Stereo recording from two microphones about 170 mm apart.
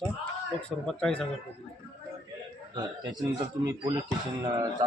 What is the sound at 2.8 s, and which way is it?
A man's voice, 25° right (ahead or behind).